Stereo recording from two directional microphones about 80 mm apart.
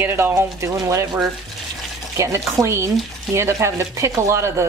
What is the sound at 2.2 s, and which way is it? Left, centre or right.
Speech, right.